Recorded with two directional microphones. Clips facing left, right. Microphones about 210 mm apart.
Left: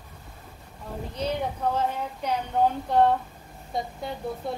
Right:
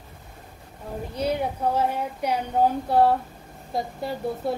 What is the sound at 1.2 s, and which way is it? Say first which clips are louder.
A woman's voice: right 3 dB; 10° right (ahead or behind).